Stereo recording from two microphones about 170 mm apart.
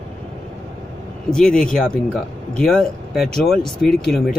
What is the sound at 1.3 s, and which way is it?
Speech, 5° left (ahead or behind).